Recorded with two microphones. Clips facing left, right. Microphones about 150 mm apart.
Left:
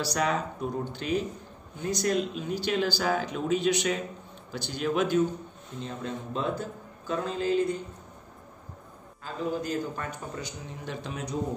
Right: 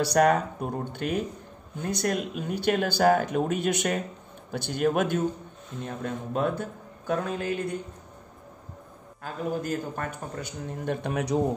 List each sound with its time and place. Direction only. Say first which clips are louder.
0.0 s speech: right 7 dB; 55° right (ahead or behind)
9.2 s speech: right 1 dB; 55° right (ahead or behind)